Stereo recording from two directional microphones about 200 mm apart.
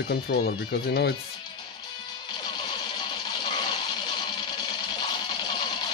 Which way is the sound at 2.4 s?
20° left (ahead or behind).